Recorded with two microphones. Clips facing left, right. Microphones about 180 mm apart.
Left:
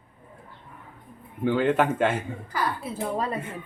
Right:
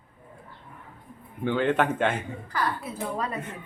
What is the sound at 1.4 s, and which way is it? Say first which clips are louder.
Speech: left 2 dB; 5° left (ahead or behind).